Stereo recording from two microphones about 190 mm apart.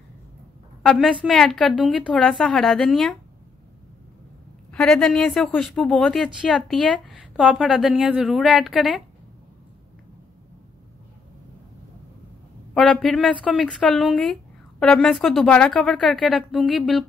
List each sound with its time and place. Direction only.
0.8 s speech: 5° left (ahead or behind)
4.7 s speech: 5° left (ahead or behind)
12.7 s speech: 5° left (ahead or behind)